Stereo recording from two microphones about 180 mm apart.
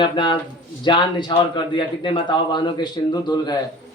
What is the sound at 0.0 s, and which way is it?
A man's voice, 25° left (ahead or behind).